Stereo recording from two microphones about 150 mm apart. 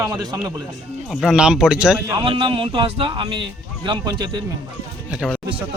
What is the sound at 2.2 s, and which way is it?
A man's voice, 35° right (ahead or behind).